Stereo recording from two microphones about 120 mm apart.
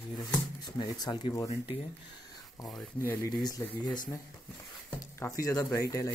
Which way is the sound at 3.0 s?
20° left (ahead or behind).